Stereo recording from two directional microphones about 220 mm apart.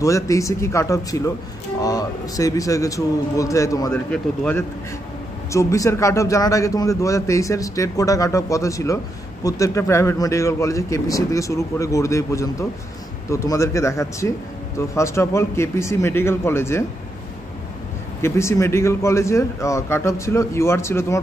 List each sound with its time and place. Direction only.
0.0 s a man's voice: 15° left (ahead or behind)
18.2 s a man's voice: 10° left (ahead or behind)